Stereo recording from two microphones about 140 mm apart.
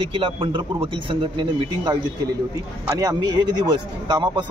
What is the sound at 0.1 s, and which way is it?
Speech, 40° right (ahead or behind).